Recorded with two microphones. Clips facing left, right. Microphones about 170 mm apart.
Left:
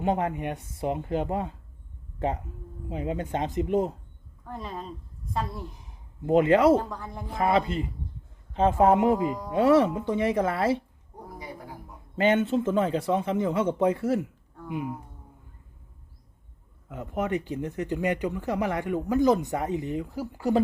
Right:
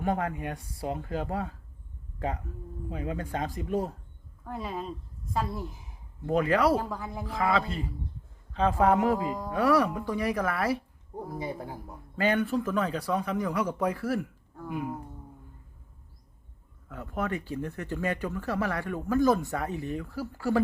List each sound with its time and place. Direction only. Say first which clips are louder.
0.0 s speech: left 3 dB; 20° left (ahead or behind)
4.4 s a woman's voice: right 2 dB; 5° right (ahead or behind)
6.2 s speech: left 5 dB; 25° left (ahead or behind)
6.7 s a woman's voice: left 2 dB; 5° right (ahead or behind)
7.3 s speech: left 3 dB; 25° left (ahead or behind)
11.3 s a man's voice: right 4 dB; 30° right (ahead or behind)
12.1 s speech: left 4 dB; 25° left (ahead or behind)
16.9 s speech: left 4 dB; 20° left (ahead or behind)